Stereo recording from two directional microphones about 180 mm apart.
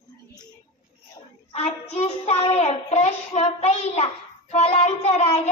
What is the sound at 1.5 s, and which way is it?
Child singing, 35° left (ahead or behind).